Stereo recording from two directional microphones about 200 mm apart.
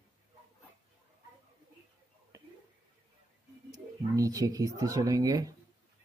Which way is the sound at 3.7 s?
15° right (ahead or behind).